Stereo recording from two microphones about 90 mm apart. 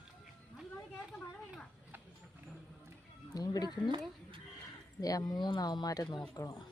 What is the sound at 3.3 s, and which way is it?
Speech, 45° left (ahead or behind).